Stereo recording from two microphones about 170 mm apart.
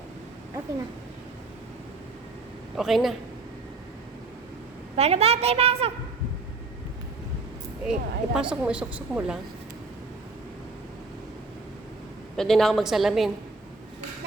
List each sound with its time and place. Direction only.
2.7 s a woman's voice: centre (ahead or behind)
4.9 s a woman's voice: 40° right (ahead or behind)
7.9 s a woman's voice: 5° right (ahead or behind)
12.4 s a woman's voice: centre (ahead or behind)